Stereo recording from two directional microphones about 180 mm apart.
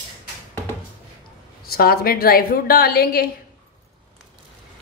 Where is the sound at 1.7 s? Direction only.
55° left (ahead or behind).